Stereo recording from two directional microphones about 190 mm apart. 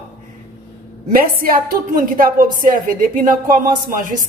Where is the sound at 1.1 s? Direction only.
50° right (ahead or behind).